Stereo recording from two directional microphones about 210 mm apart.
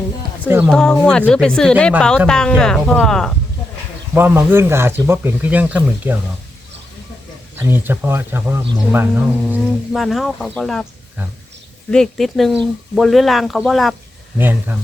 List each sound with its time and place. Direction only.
0.4 s speech: 10° right (ahead or behind)
0.7 s speech: 5° left (ahead or behind)
4.1 s speech: 10° right (ahead or behind)
7.5 s speech: 10° right (ahead or behind)
9.5 s speech: centre (ahead or behind)
11.9 s speech: centre (ahead or behind)